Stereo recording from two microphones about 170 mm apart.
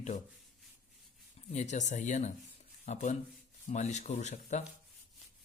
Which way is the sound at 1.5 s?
45° left (ahead or behind).